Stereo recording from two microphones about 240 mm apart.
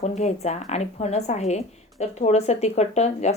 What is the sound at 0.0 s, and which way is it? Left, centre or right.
Speech, left.